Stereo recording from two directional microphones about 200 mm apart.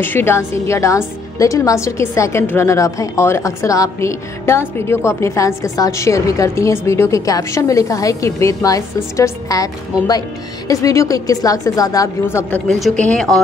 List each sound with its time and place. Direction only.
0.0 s a woman's voice: 10° left (ahead or behind)